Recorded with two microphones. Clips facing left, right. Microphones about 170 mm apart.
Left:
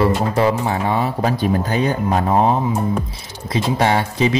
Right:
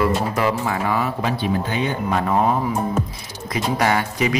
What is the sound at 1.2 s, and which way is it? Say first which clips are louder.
Speech: left 4 dB; 40° left (ahead or behind).